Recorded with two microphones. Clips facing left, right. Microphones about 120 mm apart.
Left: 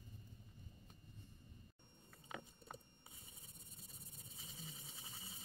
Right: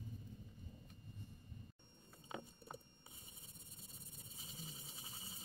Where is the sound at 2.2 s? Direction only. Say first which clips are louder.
Right 2 dB; 25° right (ahead or behind).